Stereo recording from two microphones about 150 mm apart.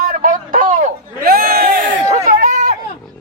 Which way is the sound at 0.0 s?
60° right (ahead or behind).